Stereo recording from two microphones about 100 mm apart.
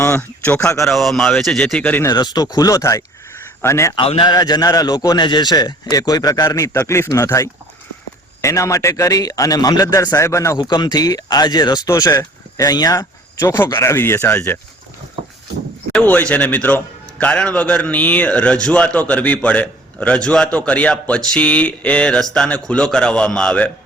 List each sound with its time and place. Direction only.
0.0 s speech: 25° left (ahead or behind)
0.7 s speech: 30° left (ahead or behind)
0.9 s a man's voice: centre (ahead or behind); by 2.0 s 15° left (ahead or behind)
2.0 s speech: 45° left (ahead or behind); by 3.9 s 25° left (ahead or behind)
3.9 s a man's voice: 65° left (ahead or behind)
4.3 s speech: 45° left (ahead or behind)
10.6 s speech: 45° left (ahead or behind); by 14.6 s 25° left (ahead or behind)
15.9 s a man's voice: 15° left (ahead or behind)